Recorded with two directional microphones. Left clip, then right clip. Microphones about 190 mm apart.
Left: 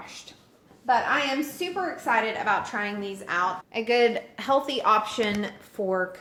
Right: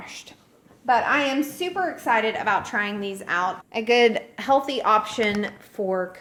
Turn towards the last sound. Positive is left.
turn(degrees=-15)  # may be behind; listen again after turning